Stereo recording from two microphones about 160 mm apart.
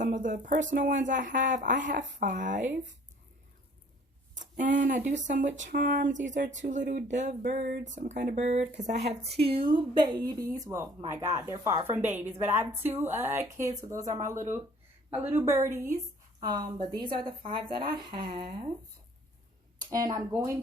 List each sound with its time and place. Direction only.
0.0 s speech: 55° right (ahead or behind)
4.4 s speech: 55° right (ahead or behind)
9.4 s a woman's voice: 35° right (ahead or behind)
19.9 s speech: 20° right (ahead or behind)